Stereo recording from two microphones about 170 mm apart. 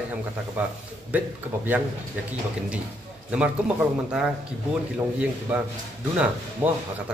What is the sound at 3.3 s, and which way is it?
A man's voice, 5° right (ahead or behind).